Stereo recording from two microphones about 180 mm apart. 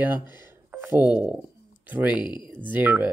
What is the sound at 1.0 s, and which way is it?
Speech, 10° right (ahead or behind).